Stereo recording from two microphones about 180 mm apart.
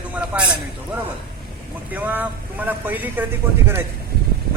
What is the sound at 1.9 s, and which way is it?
A man's voice, 10° right (ahead or behind).